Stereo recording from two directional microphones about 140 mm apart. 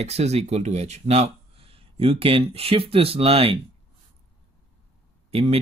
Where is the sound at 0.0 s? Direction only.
50° right (ahead or behind).